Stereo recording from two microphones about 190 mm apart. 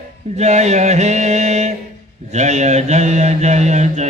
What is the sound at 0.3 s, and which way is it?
Mantra, 35° right (ahead or behind).